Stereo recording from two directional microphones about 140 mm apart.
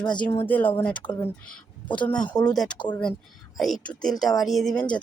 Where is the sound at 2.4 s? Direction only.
5° left (ahead or behind).